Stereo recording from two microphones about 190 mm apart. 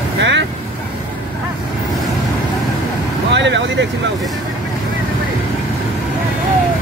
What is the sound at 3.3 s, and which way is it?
Vehicle, 70° right (ahead or behind).